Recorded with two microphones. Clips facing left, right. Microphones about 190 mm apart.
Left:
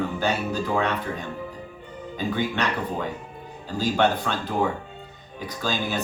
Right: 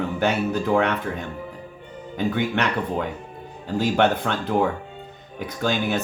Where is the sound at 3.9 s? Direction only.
55° right (ahead or behind).